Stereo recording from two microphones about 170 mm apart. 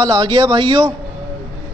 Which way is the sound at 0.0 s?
25° right (ahead or behind).